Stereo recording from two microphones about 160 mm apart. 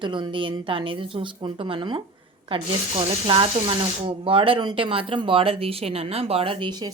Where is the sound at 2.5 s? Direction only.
35° right (ahead or behind).